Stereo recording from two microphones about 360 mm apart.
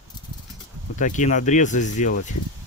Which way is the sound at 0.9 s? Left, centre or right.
Left.